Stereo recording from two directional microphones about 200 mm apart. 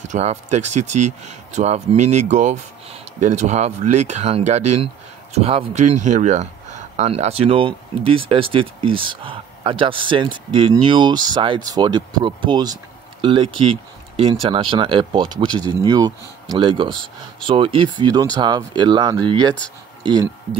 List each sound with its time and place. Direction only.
0.0 s speech: 35° right (ahead or behind)